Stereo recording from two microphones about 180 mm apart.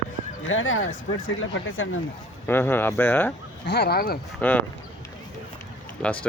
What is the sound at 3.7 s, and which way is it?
Speech, 65° left (ahead or behind).